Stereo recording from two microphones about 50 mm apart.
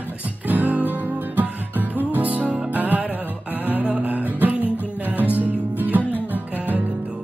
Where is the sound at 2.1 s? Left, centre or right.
Right.